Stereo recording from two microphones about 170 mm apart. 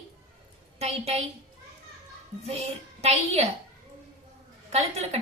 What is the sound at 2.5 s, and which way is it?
Speech, 35° right (ahead or behind).